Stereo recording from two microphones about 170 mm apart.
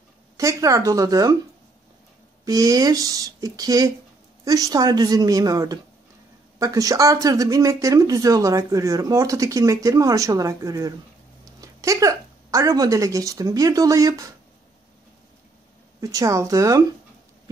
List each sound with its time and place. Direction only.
0.4 s speech: 20° right (ahead or behind)
2.4 s speech: 20° right (ahead or behind)
16.0 s speech: 20° right (ahead or behind)